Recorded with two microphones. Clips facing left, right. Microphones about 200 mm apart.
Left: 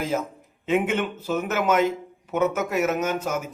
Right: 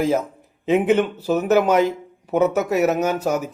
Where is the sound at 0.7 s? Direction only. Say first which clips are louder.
Right 6 dB; 35° right (ahead or behind).